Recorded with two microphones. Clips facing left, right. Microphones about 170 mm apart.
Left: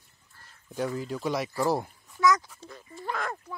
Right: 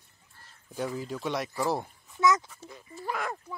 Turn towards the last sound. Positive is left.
turn(degrees=-10)  # may be behind; listen again after turning